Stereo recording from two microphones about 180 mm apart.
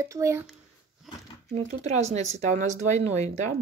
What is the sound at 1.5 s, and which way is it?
Speech, 40° right (ahead or behind).